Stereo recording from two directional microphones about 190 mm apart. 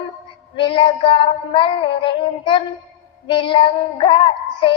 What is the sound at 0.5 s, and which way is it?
Child singing, 25° left (ahead or behind).